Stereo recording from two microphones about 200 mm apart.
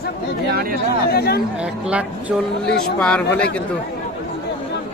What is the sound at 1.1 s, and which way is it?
Speech, 50° left (ahead or behind).